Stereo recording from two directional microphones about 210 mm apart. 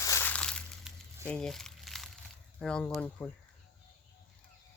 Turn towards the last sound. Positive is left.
turn(degrees=5)  # may be behind; listen again after turning